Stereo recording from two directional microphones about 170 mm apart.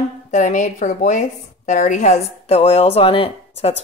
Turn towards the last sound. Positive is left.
turn(degrees=35)  # may be behind; listen again after turning